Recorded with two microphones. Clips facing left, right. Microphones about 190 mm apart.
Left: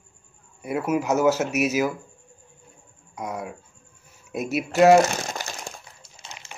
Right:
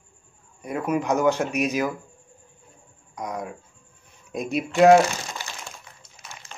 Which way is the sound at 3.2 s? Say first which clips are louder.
Even; 5° left (ahead or behind).